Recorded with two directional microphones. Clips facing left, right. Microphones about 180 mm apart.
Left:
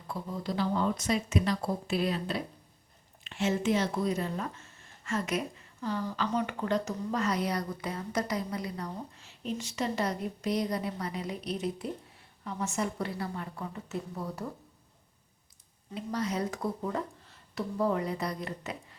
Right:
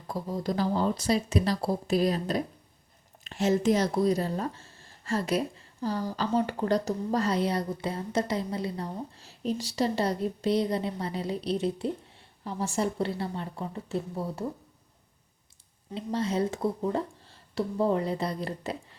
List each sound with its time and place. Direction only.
0.1 s speech: 40° right (ahead or behind)
16.0 s speech: 25° right (ahead or behind)